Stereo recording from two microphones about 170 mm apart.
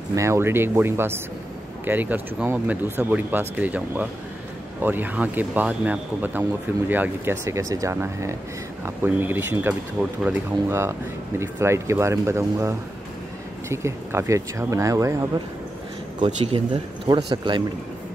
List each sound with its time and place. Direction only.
0.1 s speech: 15° right (ahead or behind)
16.2 s speech: 40° right (ahead or behind)